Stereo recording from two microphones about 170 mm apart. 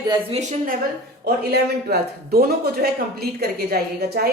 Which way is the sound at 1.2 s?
70° right (ahead or behind).